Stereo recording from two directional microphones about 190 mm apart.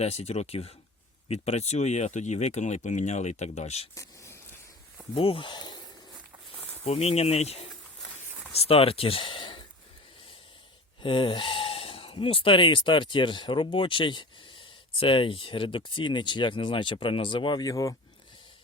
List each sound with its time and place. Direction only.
0.0 s speech: 35° left (ahead or behind)
3.9 s a sound: 15° left (ahead or behind)
5.1 s speech: 30° left (ahead or behind)
6.8 s speech: 30° left (ahead or behind)
11.0 s speech: 25° left (ahead or behind)